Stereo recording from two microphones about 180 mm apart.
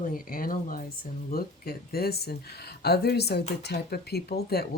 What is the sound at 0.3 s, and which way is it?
Speech, 50° left (ahead or behind).